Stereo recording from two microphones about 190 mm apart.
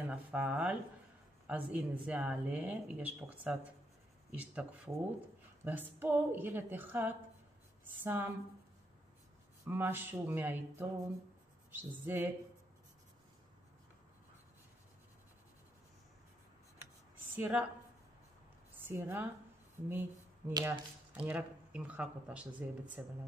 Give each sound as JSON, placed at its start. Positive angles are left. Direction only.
{"t": 0.1, "sound": "speech", "side_deg": -5}
{"t": 9.7, "sound": "speech", "side_deg": -10}
{"t": 17.4, "sound": "speech", "side_deg": -5}
{"t": 18.9, "sound": "speech", "side_deg": -10}
{"t": 19.9, "sound": "a sound", "side_deg": -10}
{"t": 20.5, "sound": "speech", "side_deg": -20}
{"t": 21.1, "sound": "speech", "side_deg": -5}